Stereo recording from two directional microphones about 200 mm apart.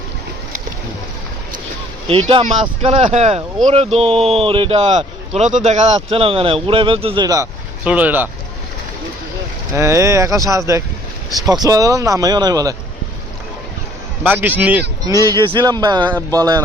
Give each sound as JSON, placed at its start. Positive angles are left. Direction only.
{"t": 2.0, "sound": "a man's voice", "side_deg": -30}
{"t": 7.9, "sound": "speech", "side_deg": -5}
{"t": 9.7, "sound": "speech", "side_deg": -15}
{"t": 14.3, "sound": "speech", "side_deg": -10}
{"t": 15.3, "sound": "a man's voice", "side_deg": -20}